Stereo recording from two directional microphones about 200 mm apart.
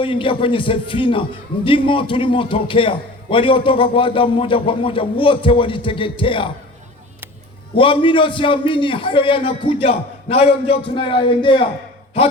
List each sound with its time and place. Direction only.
0.0 s a man's voice: 25° left (ahead or behind)
7.8 s a man's voice: 25° left (ahead or behind)